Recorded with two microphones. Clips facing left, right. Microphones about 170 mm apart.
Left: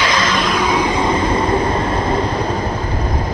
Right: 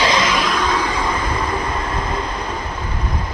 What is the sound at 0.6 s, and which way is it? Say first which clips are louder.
Vehicle: left 4 dB; 15° left (ahead or behind).